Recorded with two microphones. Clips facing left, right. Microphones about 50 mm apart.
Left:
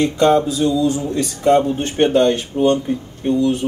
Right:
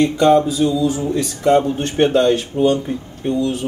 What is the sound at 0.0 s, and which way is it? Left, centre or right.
A man's voice, centre.